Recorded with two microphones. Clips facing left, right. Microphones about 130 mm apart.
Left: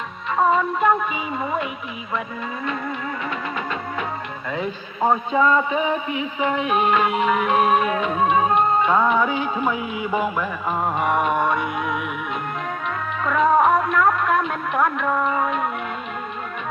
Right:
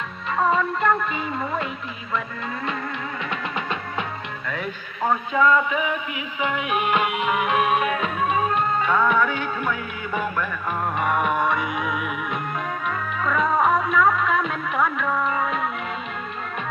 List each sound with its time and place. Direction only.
0.8 s a sound: 5° left (ahead or behind)
4.4 s a man's voice: 25° left (ahead or behind)
7.0 s music: 35° left (ahead or behind)
8.9 s music: 20° left (ahead or behind); by 12.0 s centre (ahead or behind)
13.2 s music: centre (ahead or behind)